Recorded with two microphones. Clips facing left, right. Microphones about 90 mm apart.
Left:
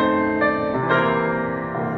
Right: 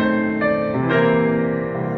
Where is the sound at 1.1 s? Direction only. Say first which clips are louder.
Right 4 dB; 25° left (ahead or behind).